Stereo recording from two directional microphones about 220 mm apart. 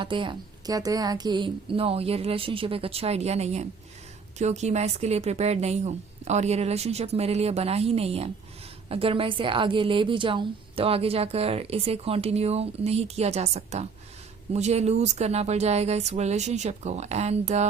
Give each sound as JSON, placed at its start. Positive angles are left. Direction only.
{"t": 0.0, "sound": "a woman's voice", "side_deg": -20}